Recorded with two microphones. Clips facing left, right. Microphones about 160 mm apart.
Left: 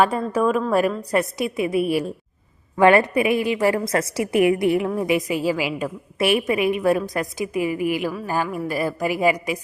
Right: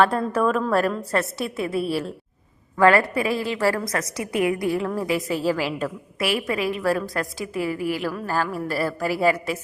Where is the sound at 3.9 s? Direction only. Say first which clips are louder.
Left 5 dB; 30° left (ahead or behind); by 5.9 s 10° left (ahead or behind).